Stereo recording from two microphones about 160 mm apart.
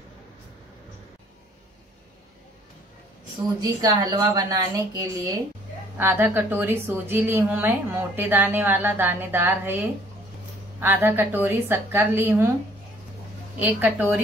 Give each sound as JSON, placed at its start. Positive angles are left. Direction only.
{"t": 3.6, "sound": "a woman's voice", "side_deg": -25}
{"t": 13.6, "sound": "a woman's voice", "side_deg": -10}